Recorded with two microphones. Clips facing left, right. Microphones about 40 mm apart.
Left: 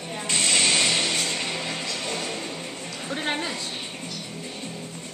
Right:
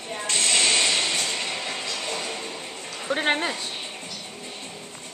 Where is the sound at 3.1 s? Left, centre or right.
Right.